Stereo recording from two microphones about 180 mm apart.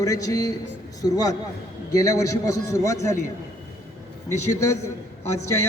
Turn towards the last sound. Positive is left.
turn(degrees=15)  # may be behind; listen again after turning